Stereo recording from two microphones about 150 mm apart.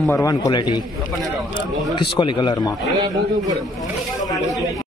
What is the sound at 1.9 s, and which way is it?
Speech, 30° left (ahead or behind).